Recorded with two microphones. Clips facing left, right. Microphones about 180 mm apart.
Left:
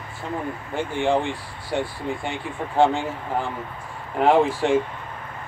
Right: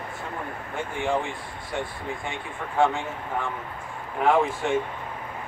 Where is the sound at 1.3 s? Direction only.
30° left (ahead or behind).